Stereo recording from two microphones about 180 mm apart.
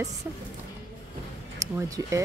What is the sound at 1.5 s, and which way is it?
Speech, 15° right (ahead or behind).